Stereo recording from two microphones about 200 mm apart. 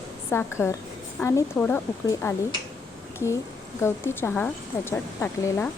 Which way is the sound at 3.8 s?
10° left (ahead or behind).